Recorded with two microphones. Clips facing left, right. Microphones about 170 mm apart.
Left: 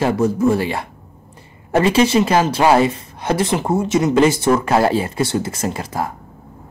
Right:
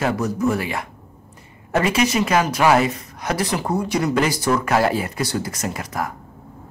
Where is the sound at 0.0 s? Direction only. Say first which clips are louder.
Left 5 dB; 30° left (ahead or behind).